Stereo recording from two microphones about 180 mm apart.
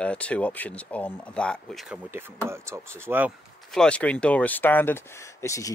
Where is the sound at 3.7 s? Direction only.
5° left (ahead or behind).